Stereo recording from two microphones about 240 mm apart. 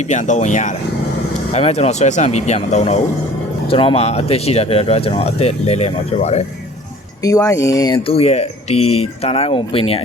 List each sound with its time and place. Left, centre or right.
0.1 s speech: left
7.2 s speech: centre